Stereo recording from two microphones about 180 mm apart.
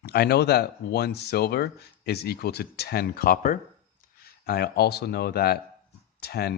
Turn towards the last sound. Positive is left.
turn(degrees=65)  # may be behind; listen again after turning